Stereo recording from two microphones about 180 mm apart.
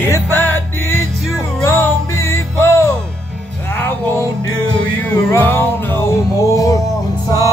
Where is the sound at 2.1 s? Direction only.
15° left (ahead or behind).